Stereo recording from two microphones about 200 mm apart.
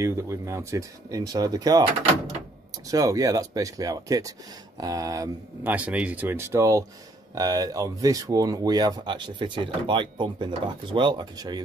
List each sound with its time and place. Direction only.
0.0 s speech: 15° right (ahead or behind)
2.9 s speech: 15° right (ahead or behind)